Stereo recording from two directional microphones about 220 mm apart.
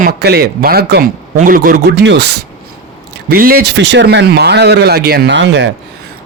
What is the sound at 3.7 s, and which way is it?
Speech, 55° right (ahead or behind).